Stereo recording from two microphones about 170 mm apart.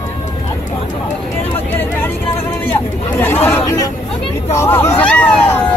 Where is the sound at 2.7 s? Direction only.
10° left (ahead or behind).